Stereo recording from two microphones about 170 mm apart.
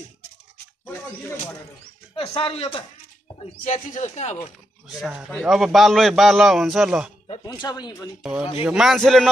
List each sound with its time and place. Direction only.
2.1 s speech: 35° left (ahead or behind)
3.6 s speech: 50° left (ahead or behind)
4.8 s a man's voice: 5° right (ahead or behind)
7.4 s speech: 25° left (ahead or behind)
8.2 s a man's voice: 5° right (ahead or behind)